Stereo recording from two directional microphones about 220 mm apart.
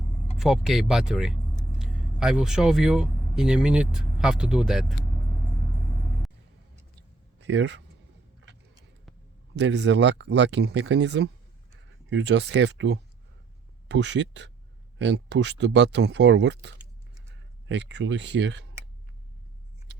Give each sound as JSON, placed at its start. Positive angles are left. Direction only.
{"t": 0.3, "sound": "speech", "side_deg": 0}
{"t": 7.3, "sound": "speech", "side_deg": -55}
{"t": 9.6, "sound": "speech", "side_deg": -55}